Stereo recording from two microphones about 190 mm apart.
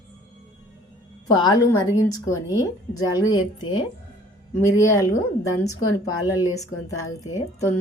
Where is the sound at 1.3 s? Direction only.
20° left (ahead or behind).